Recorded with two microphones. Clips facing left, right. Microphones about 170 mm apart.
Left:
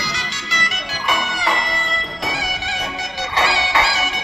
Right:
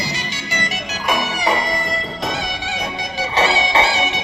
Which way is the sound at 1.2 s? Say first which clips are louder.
Right 3 dB; 15° right (ahead or behind).